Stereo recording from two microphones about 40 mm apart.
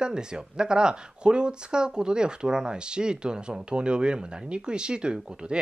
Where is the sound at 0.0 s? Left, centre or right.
Right.